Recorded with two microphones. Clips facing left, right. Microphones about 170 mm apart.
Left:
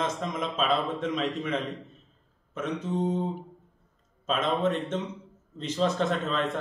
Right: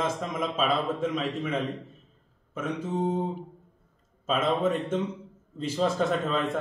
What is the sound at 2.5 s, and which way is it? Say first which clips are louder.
Speech: even; 5° right (ahead or behind).